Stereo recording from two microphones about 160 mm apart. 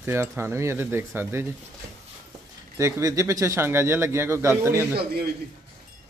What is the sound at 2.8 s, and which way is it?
A man's voice, 20° right (ahead or behind).